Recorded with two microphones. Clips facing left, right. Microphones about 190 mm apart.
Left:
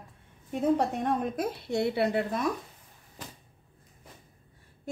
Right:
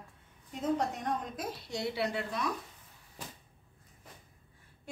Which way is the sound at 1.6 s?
55° left (ahead or behind).